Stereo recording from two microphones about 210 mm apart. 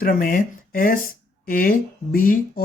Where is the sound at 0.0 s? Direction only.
45° left (ahead or behind).